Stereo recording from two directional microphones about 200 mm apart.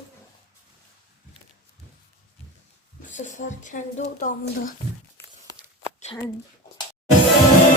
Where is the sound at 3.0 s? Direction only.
40° left (ahead or behind).